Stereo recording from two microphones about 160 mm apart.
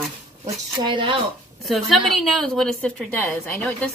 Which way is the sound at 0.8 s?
30° right (ahead or behind).